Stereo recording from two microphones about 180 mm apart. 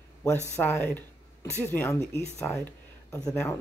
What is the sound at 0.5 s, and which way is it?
Speech, 10° left (ahead or behind).